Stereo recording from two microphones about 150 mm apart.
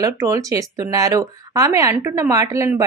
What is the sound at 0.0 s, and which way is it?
Speech, 20° right (ahead or behind).